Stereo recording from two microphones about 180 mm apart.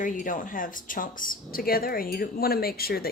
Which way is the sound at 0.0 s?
45° left (ahead or behind).